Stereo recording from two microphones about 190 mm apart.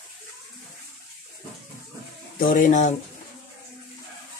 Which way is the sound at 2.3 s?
45° left (ahead or behind).